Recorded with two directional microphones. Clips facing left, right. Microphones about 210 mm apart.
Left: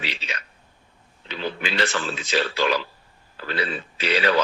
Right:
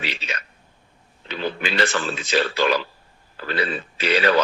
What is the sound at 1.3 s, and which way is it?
A man's voice, 50° right (ahead or behind).